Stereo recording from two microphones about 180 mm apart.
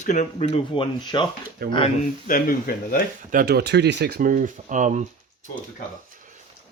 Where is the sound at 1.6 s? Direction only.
60° right (ahead or behind).